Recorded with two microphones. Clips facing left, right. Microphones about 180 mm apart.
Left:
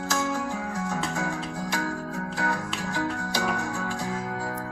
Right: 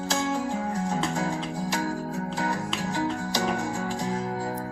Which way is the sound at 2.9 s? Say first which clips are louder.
Right 1 dB; 20° right (ahead or behind).